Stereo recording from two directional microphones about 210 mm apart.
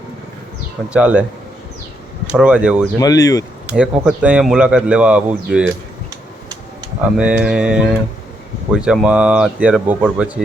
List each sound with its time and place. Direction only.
0.9 s speech: 5° right (ahead or behind)
2.2 s speech: 5° right (ahead or behind)
3.0 s speech: 15° left (ahead or behind)
3.7 s speech: 5° right (ahead or behind)
7.2 s speech: 5° right (ahead or behind)